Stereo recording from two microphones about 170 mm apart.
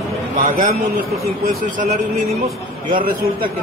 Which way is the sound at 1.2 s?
55° right (ahead or behind).